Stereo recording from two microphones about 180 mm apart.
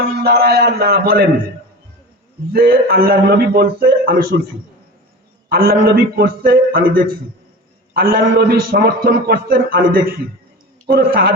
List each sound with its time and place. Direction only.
0.2 s a man's voice: 65° right (ahead or behind)
2.5 s a man's voice: 55° right (ahead or behind)
5.5 s a man's voice: 60° right (ahead or behind)